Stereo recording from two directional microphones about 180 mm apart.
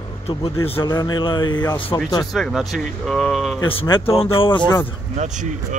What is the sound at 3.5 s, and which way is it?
A man's voice, 30° left (ahead or behind).